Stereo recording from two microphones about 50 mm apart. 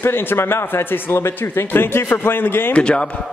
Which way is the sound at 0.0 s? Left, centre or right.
Left.